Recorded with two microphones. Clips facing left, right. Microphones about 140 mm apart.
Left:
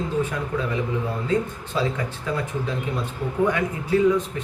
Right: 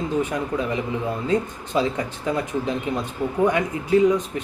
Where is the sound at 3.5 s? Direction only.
20° right (ahead or behind).